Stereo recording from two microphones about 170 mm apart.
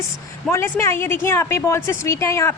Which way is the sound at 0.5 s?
15° left (ahead or behind).